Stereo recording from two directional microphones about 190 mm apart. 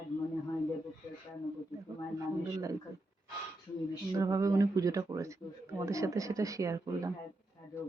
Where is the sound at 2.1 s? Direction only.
15° right (ahead or behind).